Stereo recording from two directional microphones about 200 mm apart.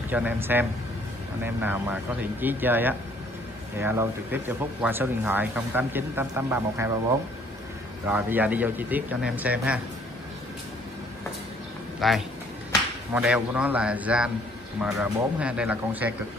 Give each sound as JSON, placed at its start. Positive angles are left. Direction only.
{"t": 0.1, "sound": "speech", "side_deg": -10}
{"t": 8.1, "sound": "speech", "side_deg": -10}
{"t": 12.0, "sound": "a man's voice", "side_deg": 0}